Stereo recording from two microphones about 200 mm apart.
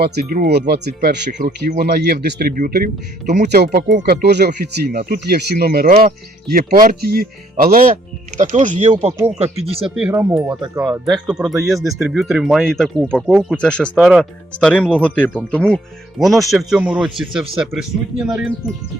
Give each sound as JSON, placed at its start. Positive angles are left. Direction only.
{"t": 0.0, "sound": "speech", "side_deg": -50}
{"t": 3.5, "sound": "speech", "side_deg": -55}
{"t": 9.9, "sound": "speech", "side_deg": -10}
{"t": 11.0, "sound": "speech", "side_deg": -5}
{"t": 14.6, "sound": "speech", "side_deg": 5}